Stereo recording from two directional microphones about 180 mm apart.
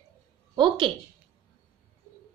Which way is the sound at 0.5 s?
25° right (ahead or behind).